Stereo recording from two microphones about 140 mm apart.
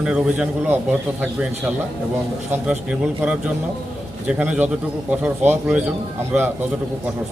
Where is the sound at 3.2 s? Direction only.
10° right (ahead or behind).